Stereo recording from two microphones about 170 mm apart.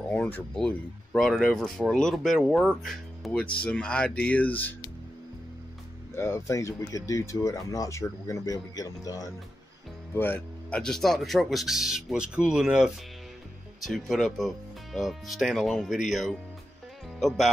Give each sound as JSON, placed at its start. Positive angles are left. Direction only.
{"t": 0.1, "sound": "speech", "side_deg": 10}
{"t": 6.1, "sound": "speech", "side_deg": 15}